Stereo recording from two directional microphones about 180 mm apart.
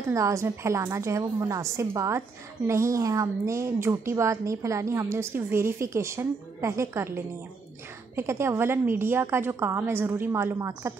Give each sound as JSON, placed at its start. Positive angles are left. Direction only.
{"t": 0.1, "sound": "a woman's voice", "side_deg": -15}
{"t": 8.2, "sound": "a woman's voice", "side_deg": -15}